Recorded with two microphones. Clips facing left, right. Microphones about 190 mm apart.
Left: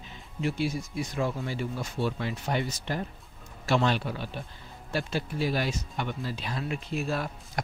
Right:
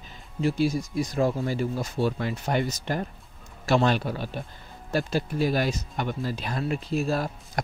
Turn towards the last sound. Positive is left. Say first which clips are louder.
# right 4 dB
turn(degrees=-40)  # may be behind; listen again after turning